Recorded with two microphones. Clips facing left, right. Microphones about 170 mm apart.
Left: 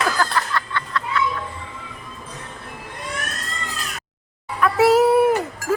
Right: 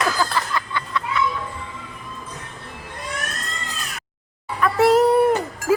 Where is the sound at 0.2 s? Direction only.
10° right (ahead or behind).